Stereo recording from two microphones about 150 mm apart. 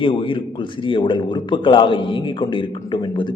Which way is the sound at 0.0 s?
35° left (ahead or behind).